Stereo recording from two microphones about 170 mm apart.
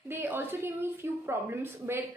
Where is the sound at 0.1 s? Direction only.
10° right (ahead or behind).